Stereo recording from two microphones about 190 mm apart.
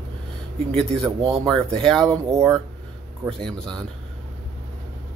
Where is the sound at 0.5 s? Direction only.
30° right (ahead or behind).